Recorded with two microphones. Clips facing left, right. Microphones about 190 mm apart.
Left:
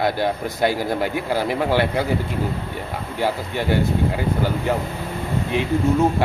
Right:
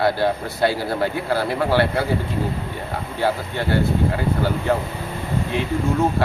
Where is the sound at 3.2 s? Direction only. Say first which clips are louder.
Even; 15° left (ahead or behind).